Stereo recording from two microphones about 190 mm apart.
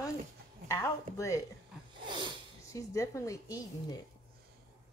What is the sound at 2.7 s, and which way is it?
A woman's voice, 15° left (ahead or behind).